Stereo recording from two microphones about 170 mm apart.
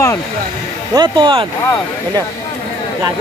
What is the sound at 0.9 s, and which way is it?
Speech, 25° right (ahead or behind).